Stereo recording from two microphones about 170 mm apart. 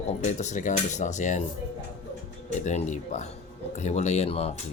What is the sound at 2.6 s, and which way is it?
A man's voice, 45° left (ahead or behind).